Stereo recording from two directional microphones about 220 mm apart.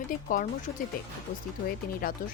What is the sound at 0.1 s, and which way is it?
Speech, 35° left (ahead or behind).